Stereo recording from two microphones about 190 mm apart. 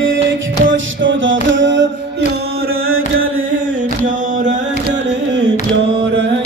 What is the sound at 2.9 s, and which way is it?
Music, 90° right.